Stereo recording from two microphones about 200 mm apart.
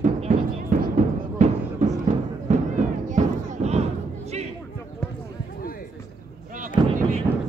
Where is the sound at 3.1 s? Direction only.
35° right (ahead or behind).